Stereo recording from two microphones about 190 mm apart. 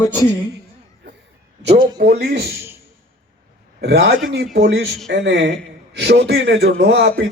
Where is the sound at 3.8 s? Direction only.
65° right (ahead or behind).